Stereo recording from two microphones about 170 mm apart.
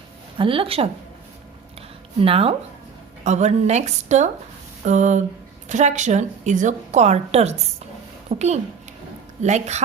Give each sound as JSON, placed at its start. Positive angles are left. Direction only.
{"t": 0.3, "sound": "a woman's voice", "side_deg": -30}
{"t": 2.2, "sound": "a woman's voice", "side_deg": -35}